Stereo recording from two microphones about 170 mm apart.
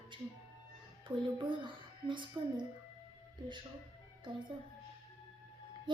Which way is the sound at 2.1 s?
30° right (ahead or behind).